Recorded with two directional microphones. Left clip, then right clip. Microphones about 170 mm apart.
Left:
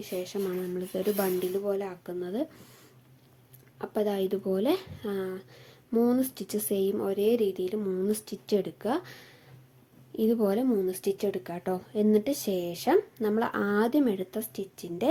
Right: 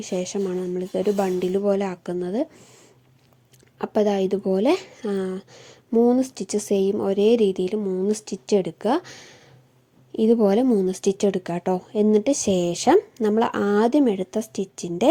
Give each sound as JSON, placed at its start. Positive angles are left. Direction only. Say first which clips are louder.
{"t": 0.0, "sound": "speech", "louder": "right 6 dB", "side_deg": -40}
{"t": 1.5, "sound": "speech", "louder": "right 8 dB", "side_deg": -45}
{"t": 3.8, "sound": "speech", "louder": "right 8 dB", "side_deg": -40}
{"t": 7.8, "sound": "speech", "louder": "right 6 dB", "side_deg": -25}